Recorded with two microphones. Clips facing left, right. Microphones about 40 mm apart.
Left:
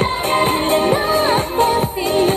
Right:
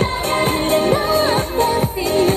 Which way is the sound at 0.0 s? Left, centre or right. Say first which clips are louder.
Left 2 dB; left.